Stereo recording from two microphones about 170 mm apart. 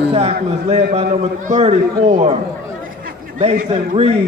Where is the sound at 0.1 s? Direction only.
40° right (ahead or behind).